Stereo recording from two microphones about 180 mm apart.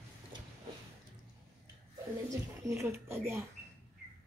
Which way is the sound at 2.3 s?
15° right (ahead or behind).